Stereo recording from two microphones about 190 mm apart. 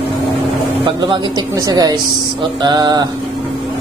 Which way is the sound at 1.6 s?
20° right (ahead or behind).